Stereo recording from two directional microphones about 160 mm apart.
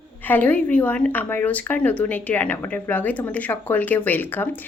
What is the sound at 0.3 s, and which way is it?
A woman's voice, 10° left (ahead or behind).